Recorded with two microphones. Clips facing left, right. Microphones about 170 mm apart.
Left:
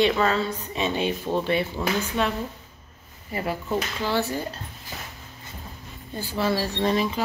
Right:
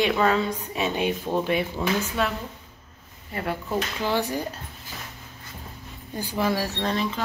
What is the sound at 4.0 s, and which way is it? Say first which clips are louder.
Speech: right 2 dB; 15° right (ahead or behind).